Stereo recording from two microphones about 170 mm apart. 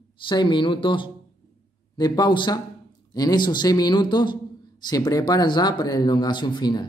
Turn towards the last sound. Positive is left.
turn(degrees=25)  # may be behind; listen again after turning